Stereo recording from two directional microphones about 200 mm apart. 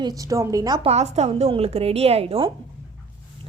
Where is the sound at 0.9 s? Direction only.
35° right (ahead or behind).